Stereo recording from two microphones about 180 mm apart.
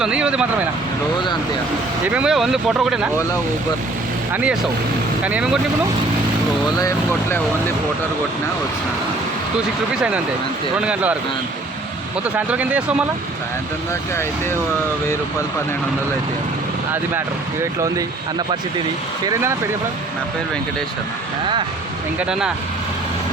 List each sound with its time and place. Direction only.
0.0 s speech: 5° right (ahead or behind)
2.0 s speech: 5° right (ahead or behind)
4.3 s speech: 10° right (ahead or behind)
6.7 s speech: 20° left (ahead or behind)
9.9 s speech: 5° right (ahead or behind)
12.5 s speech: 10° right (ahead or behind)
16.9 s speech: 15° right (ahead or behind)